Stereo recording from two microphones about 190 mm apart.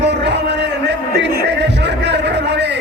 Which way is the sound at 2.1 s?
65° right (ahead or behind).